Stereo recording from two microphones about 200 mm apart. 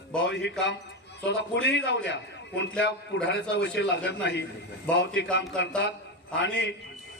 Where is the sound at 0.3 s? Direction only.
60° left (ahead or behind).